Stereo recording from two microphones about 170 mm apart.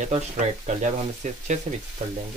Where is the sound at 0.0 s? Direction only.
45° right (ahead or behind).